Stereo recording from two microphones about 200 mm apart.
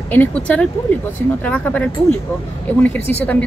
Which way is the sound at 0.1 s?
10° left (ahead or behind).